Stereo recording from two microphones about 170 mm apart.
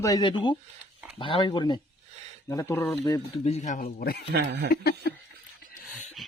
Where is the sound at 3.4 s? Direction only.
40° left (ahead or behind); by 4.2 s 60° left (ahead or behind).